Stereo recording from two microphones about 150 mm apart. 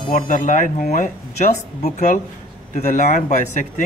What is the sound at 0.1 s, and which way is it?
A man's voice, 55° left (ahead or behind).